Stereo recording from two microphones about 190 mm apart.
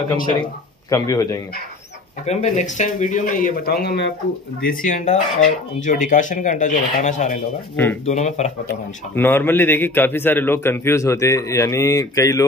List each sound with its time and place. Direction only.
0.8 s a man's voice: 15° left (ahead or behind)
2.2 s speech: 35° left (ahead or behind); by 4.1 s 60° left (ahead or behind)
4.6 s speech: 45° left (ahead or behind)
7.7 s a man's voice: 10° left (ahead or behind)
8.0 s speech: 40° left (ahead or behind)
8.6 s a man's voice: 10° left (ahead or behind)